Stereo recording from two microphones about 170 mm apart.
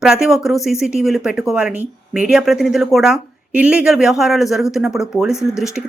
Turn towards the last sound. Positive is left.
turn(degrees=0)  # may be behind; listen again after turning